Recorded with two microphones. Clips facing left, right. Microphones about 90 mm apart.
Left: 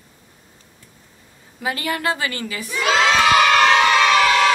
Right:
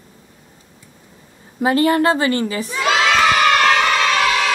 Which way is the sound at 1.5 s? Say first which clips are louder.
Right 10 dB; 35° right (ahead or behind).